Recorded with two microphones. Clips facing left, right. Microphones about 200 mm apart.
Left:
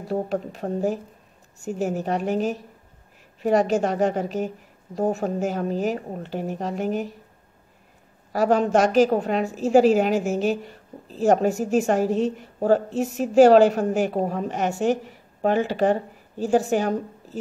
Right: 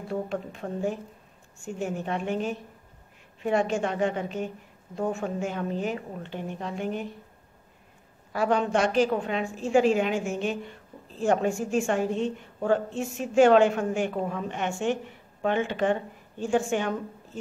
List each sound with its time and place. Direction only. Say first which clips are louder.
0.0 s a woman's voice: left 5 dB; 40° left (ahead or behind)
8.3 s a woman's voice: left 5 dB; 40° left (ahead or behind)